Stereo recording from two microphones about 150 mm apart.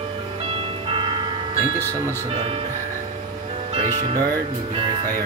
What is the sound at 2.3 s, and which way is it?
Speech, 40° right (ahead or behind).